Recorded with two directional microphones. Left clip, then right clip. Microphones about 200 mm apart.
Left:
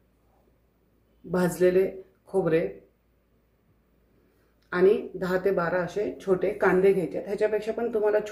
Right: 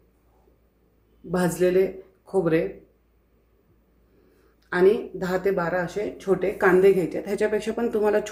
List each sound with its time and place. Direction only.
1.3 s speech: 10° right (ahead or behind)
4.7 s speech: 5° right (ahead or behind)
6.6 s speech: 30° right (ahead or behind)